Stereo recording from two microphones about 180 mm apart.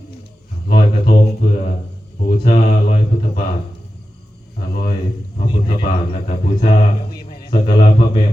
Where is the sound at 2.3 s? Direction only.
45° left (ahead or behind).